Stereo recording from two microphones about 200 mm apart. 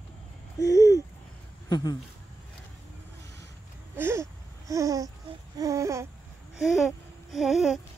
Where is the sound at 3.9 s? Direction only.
15° right (ahead or behind).